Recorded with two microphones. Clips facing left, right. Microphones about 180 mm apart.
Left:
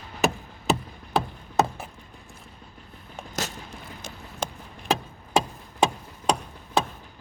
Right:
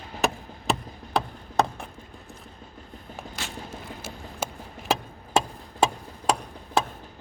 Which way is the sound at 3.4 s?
40° left (ahead or behind).